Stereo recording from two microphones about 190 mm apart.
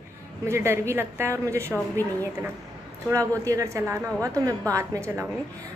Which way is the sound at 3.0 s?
15° right (ahead or behind).